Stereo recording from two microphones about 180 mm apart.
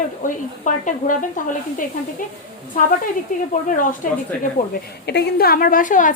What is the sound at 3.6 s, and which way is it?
Speech, 45° left (ahead or behind).